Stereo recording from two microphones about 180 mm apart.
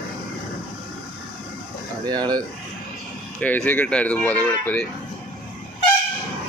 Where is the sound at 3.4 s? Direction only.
10° left (ahead or behind).